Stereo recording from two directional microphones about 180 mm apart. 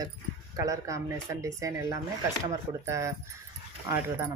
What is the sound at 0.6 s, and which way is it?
Speech, 20° right (ahead or behind).